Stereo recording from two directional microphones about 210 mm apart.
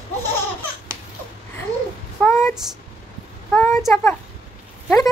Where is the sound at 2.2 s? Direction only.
15° left (ahead or behind).